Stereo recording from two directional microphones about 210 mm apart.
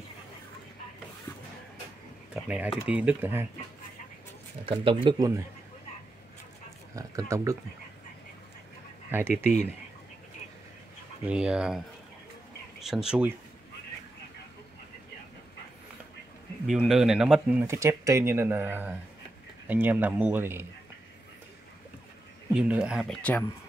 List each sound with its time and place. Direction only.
2.3 s speech: 5° right (ahead or behind)
4.6 s speech: 25° right (ahead or behind)
7.0 s speech: 15° right (ahead or behind)
9.1 s speech: 10° right (ahead or behind)
11.2 s speech: 5° right (ahead or behind)
12.8 s speech: 5° right (ahead or behind)
16.6 s speech: centre (ahead or behind)
22.5 s speech: 5° right (ahead or behind)